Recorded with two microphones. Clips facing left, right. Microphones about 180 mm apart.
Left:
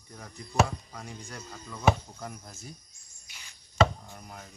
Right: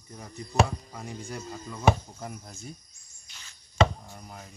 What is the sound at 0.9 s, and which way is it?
Speech, 5° right (ahead or behind).